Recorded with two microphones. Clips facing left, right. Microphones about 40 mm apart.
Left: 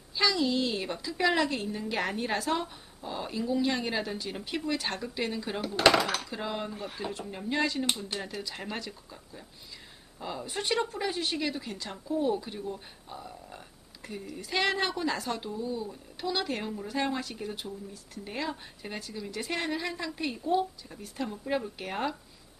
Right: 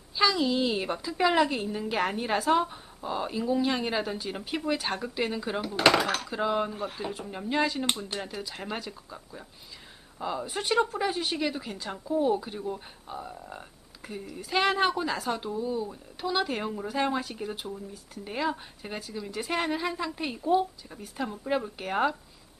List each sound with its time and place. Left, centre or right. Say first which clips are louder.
0.1 s a woman's voice: right 2 dB; centre
5.8 s speech: even; right
6.3 s a woman's voice: right 6 dB; centre
10.2 s a woman's voice: right 3 dB; centre
12.6 s speech: right 3 dB; centre
14.3 s a woman's voice: right 3 dB; centre